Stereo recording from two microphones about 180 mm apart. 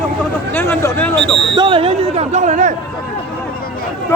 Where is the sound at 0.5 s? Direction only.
15° left (ahead or behind).